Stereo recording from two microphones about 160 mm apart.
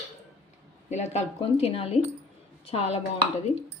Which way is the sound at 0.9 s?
45° left (ahead or behind).